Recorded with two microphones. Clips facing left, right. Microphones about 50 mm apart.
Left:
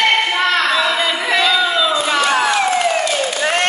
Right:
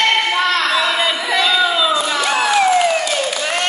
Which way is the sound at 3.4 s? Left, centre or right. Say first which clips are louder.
Left 3 dB; left.